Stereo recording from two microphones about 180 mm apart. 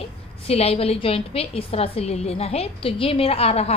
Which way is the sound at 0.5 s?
35° left (ahead or behind).